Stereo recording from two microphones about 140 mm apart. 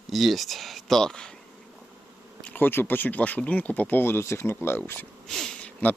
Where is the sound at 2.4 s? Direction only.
10° left (ahead or behind).